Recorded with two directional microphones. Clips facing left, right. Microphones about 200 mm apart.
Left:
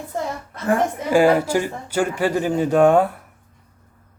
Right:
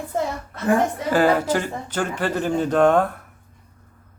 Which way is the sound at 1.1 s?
10° left (ahead or behind).